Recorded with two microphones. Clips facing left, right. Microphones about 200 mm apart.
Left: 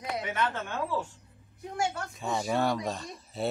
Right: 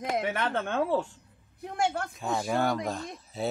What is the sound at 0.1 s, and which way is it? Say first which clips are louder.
Speech: right 2 dB; 55° right (ahead or behind).